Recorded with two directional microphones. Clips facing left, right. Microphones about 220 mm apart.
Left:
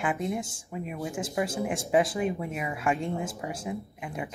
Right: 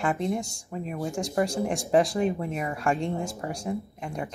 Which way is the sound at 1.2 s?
5° left (ahead or behind).